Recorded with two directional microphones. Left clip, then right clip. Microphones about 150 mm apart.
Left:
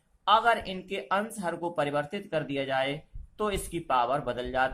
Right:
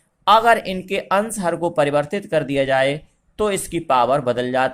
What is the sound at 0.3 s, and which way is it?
Speech, 40° right (ahead or behind).